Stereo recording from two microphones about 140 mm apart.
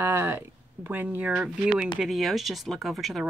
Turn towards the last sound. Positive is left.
turn(degrees=0)  # may be behind; listen again after turning